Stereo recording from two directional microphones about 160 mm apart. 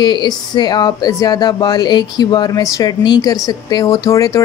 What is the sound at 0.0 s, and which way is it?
Speech, 30° left (ahead or behind).